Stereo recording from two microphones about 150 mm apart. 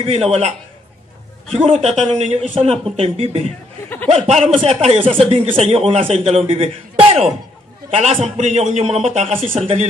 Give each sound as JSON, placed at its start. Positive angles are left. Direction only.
{"t": 0.0, "sound": "a man's voice", "side_deg": -40}
{"t": 1.5, "sound": "a man's voice", "side_deg": -45}